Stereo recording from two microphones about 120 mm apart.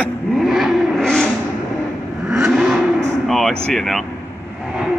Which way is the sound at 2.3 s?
5° right (ahead or behind).